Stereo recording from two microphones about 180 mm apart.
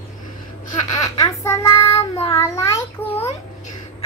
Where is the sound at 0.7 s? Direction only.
20° left (ahead or behind).